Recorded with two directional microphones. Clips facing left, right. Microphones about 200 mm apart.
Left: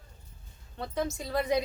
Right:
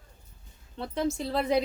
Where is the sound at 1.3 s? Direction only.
30° right (ahead or behind).